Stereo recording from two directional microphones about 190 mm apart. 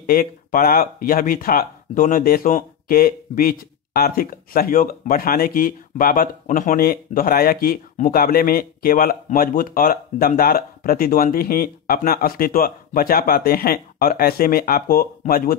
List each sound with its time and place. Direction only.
0.0 s speech: 50° left (ahead or behind)